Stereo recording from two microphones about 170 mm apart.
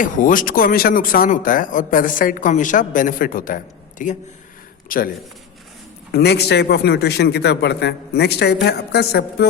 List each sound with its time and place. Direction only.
0.0 s a man's voice: 50° left (ahead or behind)
6.1 s a man's voice: 70° left (ahead or behind)